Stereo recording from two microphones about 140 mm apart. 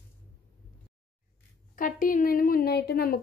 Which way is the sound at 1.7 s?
75° left (ahead or behind).